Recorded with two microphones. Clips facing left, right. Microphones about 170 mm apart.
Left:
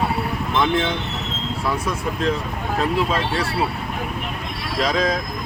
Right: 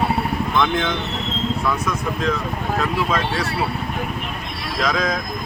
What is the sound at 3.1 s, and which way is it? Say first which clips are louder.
Speech: even; 30° left (ahead or behind).